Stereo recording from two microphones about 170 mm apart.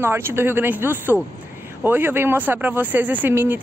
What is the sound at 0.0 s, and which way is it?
A woman's voice, 15° right (ahead or behind).